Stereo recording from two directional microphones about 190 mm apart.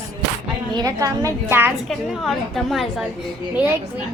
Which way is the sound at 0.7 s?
20° right (ahead or behind).